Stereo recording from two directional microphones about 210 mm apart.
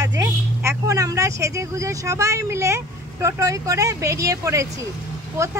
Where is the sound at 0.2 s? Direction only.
10° right (ahead or behind).